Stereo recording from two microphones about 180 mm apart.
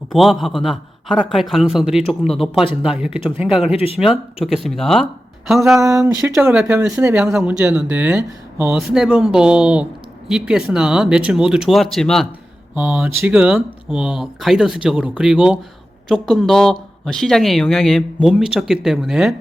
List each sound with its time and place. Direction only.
0.1 s speech: centre (ahead or behind)
3.8 s speech: 35° left (ahead or behind)
4.0 s speech: centre (ahead or behind)
5.8 s speech: 15° right (ahead or behind)
6.3 s speech: 5° right (ahead or behind)
12.7 s speech: 10° right (ahead or behind)